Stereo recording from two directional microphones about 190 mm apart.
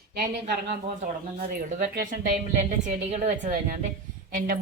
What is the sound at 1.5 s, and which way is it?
A woman's voice, 50° right (ahead or behind).